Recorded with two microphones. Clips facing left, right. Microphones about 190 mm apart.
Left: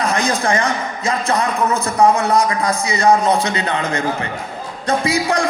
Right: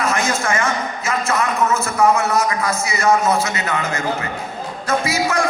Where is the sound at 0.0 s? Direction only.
35° left (ahead or behind).